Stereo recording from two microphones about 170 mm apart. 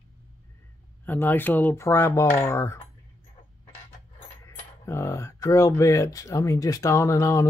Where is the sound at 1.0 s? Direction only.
10° left (ahead or behind).